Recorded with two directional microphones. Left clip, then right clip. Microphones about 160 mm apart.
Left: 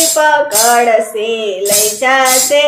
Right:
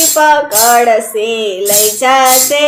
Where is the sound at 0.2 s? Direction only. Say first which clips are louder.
Right 2 dB; 30° right (ahead or behind).